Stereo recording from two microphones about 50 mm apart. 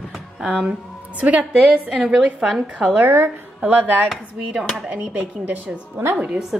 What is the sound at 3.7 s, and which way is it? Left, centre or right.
Speech, right.